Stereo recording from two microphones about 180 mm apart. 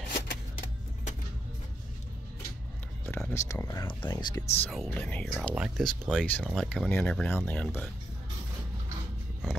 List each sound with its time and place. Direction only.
3.1 s a sound: 5° left (ahead or behind)
3.3 s speech: 15° left (ahead or behind)
4.4 s speech: 5° left (ahead or behind)
5.5 s speech: 5° right (ahead or behind)